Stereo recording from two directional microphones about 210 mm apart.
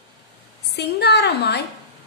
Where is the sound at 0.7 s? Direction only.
50° left (ahead or behind).